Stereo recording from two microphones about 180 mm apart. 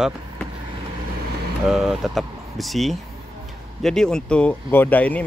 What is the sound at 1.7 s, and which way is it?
Speech, centre (ahead or behind).